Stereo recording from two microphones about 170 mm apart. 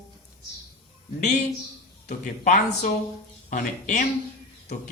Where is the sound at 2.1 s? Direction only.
45° left (ahead or behind).